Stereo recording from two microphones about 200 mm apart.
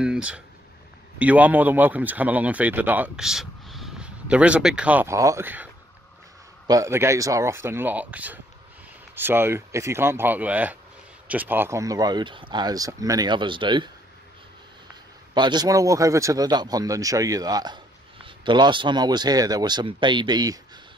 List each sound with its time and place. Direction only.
0.0 s speech: 5° right (ahead or behind)
6.7 s speech: 15° right (ahead or behind)
15.3 s speech: 20° right (ahead or behind)